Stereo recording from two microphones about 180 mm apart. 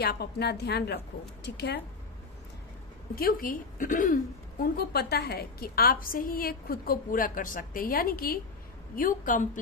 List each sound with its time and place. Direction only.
0.0 s a woman's voice: 65° left (ahead or behind)
3.2 s a woman's voice: 50° left (ahead or behind)